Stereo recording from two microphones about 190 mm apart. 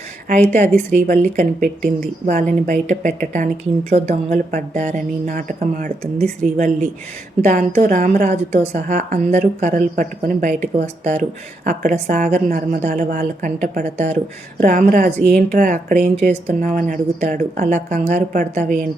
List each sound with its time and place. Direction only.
0.4 s speech: 40° right (ahead or behind)
7.4 s a woman's voice: 45° right (ahead or behind)
15.3 s speech: 5° left (ahead or behind)
15.5 s a woman's voice: 45° right (ahead or behind)